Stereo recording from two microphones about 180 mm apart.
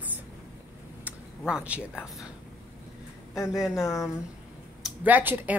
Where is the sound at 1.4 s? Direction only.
5° right (ahead or behind).